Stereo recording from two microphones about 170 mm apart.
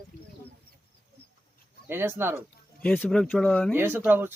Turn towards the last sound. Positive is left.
turn(degrees=-10)  # may be behind; listen again after turning